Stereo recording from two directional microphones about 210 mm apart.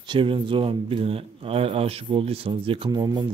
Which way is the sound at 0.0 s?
25° right (ahead or behind).